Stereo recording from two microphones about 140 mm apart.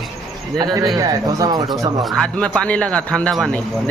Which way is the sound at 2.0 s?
Centre (ahead or behind).